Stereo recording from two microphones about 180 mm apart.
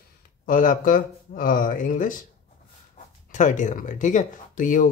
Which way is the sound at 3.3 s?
45° left (ahead or behind).